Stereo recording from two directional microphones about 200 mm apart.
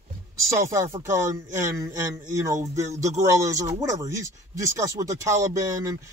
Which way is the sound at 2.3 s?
15° right (ahead or behind).